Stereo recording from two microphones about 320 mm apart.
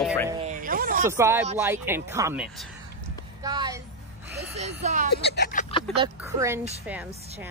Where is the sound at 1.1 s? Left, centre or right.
Centre.